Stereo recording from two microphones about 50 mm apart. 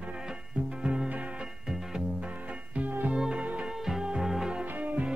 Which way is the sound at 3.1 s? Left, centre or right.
Centre.